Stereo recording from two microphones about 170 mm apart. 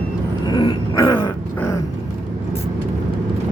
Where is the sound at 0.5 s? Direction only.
25° left (ahead or behind).